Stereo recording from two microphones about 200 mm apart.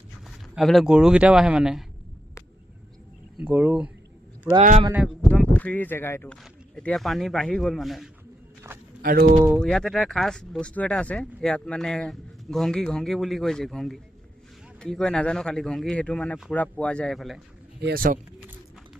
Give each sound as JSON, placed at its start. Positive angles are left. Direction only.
{"t": 0.3, "sound": "speech", "side_deg": 0}
{"t": 3.3, "sound": "speech", "side_deg": -10}
{"t": 4.9, "sound": "speech", "side_deg": 5}
{"t": 9.0, "sound": "speech", "side_deg": -50}
{"t": 9.6, "sound": "speech", "side_deg": 0}
{"t": 17.8, "sound": "speech", "side_deg": -45}